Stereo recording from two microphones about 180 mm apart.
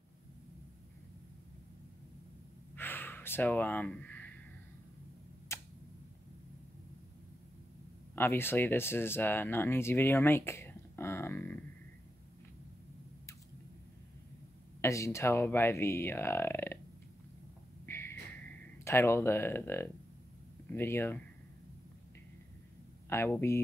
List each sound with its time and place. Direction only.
2.7 s gasp: 10° left (ahead or behind)
5.5 s tick-tock: 15° left (ahead or behind)
8.2 s speech: 10° left (ahead or behind)
14.8 s speech: 15° left (ahead or behind)
17.8 s a sound: 15° left (ahead or behind)
18.9 s speech: 15° left (ahead or behind)
23.0 s speech: 15° left (ahead or behind)